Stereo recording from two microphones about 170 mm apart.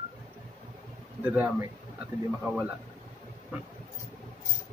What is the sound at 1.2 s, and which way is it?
Speech, 10° right (ahead or behind).